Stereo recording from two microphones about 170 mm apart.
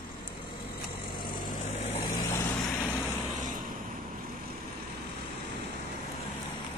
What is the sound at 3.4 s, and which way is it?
Vehicle, 50° right (ahead or behind).